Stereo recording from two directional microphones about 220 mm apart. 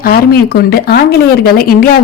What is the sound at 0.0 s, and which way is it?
Speech, 45° left (ahead or behind).